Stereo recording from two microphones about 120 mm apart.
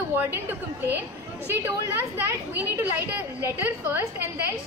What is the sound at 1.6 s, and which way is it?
Speech, 15° right (ahead or behind).